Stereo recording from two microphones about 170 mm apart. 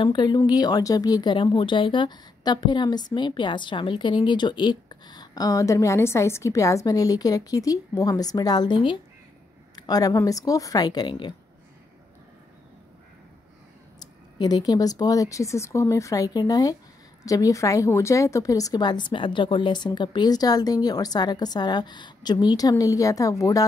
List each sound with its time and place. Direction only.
0.0 s speech: 25° left (ahead or behind)
13.9 s speech: 25° left (ahead or behind)